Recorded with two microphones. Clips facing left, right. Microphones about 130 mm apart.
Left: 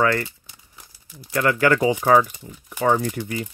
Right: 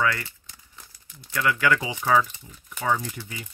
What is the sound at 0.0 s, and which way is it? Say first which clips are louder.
Speech: left 5 dB; 55° left (ahead or behind).